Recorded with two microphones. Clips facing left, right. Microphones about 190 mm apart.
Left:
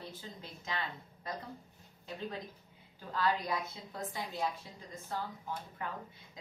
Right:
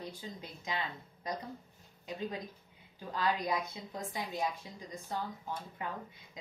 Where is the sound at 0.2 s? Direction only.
15° right (ahead or behind).